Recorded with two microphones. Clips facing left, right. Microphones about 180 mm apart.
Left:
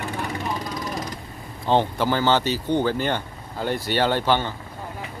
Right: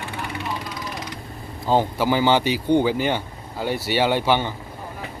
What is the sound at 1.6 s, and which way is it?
Speech, 5° right (ahead or behind).